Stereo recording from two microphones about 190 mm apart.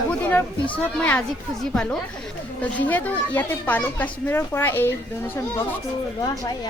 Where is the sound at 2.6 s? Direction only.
10° left (ahead or behind).